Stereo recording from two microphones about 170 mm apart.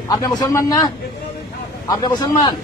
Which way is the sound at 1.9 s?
25° left (ahead or behind).